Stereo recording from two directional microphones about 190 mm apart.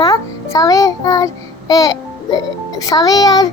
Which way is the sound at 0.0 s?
20° left (ahead or behind).